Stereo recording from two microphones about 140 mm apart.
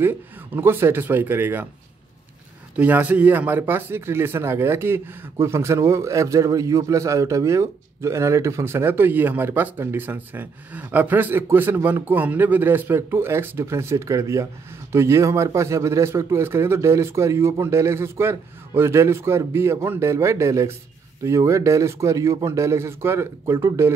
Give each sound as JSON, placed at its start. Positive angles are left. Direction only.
{"t": 0.0, "sound": "speech", "side_deg": -15}
{"t": 2.8, "sound": "speech", "side_deg": -10}